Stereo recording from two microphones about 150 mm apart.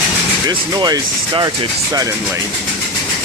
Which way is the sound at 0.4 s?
25° right (ahead or behind).